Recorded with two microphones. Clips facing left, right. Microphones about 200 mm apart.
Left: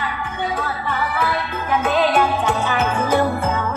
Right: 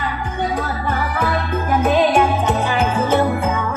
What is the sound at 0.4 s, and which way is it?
Music, 45° right (ahead or behind).